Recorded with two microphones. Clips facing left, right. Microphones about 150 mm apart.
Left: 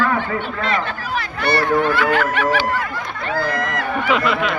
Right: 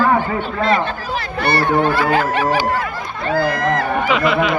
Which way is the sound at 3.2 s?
35° right (ahead or behind).